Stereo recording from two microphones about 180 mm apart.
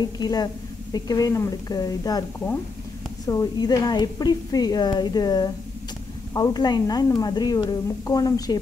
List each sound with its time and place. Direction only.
0.0 s a woman's voice: 20° left (ahead or behind)
3.3 s a woman's voice: 20° left (ahead or behind)